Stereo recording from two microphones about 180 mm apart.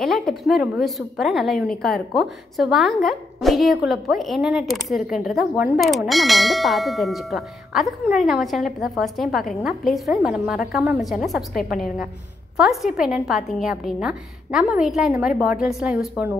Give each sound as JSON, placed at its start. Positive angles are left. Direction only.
{"t": 0.0, "sound": "a woman's voice", "side_deg": 0}